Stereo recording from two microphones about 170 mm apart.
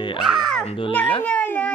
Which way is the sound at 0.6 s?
30° left (ahead or behind).